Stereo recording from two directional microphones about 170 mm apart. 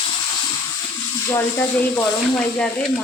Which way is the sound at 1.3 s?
10° left (ahead or behind).